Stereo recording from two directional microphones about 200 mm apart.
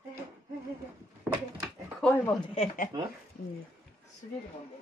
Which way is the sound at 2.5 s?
40° left (ahead or behind).